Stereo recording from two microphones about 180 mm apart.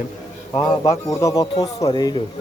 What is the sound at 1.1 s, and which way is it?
Speech, 20° left (ahead or behind).